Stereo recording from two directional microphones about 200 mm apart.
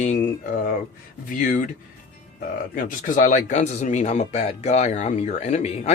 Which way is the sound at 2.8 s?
40° left (ahead or behind).